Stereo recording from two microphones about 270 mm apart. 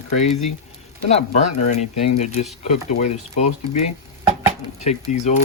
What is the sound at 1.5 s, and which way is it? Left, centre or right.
Speech, left.